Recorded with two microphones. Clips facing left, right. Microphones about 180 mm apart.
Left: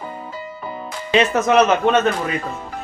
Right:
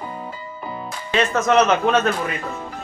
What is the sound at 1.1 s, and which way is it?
Speech, 15° left (ahead or behind).